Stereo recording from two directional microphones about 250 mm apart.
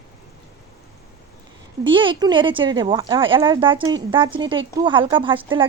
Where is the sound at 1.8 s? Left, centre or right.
Centre.